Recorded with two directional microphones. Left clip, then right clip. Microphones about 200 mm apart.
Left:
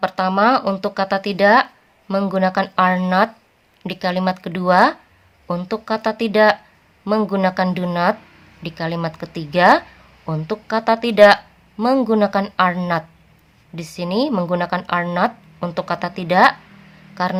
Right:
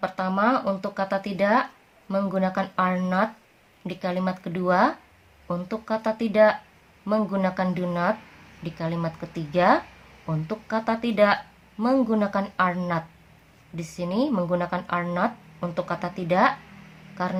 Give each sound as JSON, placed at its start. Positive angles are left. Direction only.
{"t": 0.0, "sound": "speech", "side_deg": 35}